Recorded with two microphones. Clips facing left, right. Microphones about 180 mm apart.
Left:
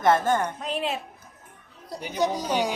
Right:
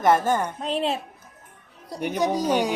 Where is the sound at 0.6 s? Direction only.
30° right (ahead or behind).